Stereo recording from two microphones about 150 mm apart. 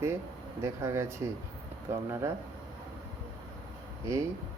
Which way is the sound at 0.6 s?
15° right (ahead or behind).